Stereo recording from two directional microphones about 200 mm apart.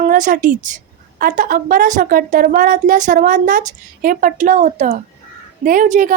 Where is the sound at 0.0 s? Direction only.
40° right (ahead or behind).